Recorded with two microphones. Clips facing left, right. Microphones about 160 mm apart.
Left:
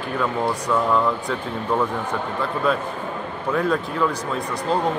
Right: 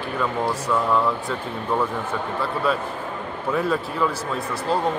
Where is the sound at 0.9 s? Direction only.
Centre (ahead or behind).